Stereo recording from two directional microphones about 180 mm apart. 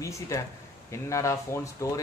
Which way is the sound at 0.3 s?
15° left (ahead or behind).